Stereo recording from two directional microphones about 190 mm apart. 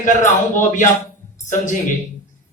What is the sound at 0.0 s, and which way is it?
Speech, 40° left (ahead or behind).